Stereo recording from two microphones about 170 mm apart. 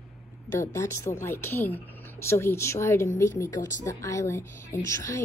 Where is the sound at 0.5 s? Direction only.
15° left (ahead or behind).